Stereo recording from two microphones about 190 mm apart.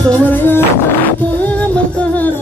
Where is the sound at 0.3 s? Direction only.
10° left (ahead or behind).